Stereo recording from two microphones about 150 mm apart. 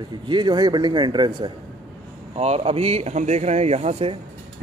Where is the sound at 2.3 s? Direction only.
45° right (ahead or behind).